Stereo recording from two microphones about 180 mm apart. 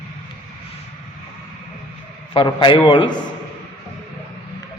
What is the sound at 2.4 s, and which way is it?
Speech, 25° left (ahead or behind).